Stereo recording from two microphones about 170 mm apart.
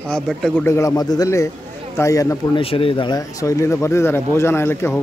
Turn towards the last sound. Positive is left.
turn(degrees=15)  # may be behind; listen again after turning